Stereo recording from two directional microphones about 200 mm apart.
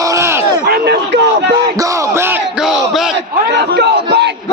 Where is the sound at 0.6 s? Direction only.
55° right (ahead or behind).